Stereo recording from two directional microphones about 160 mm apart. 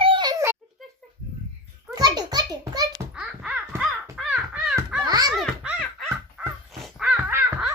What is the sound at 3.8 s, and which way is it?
Crow, 5° right (ahead or behind).